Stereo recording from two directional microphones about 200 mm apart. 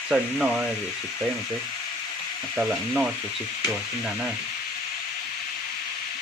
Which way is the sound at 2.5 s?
Centre (ahead or behind).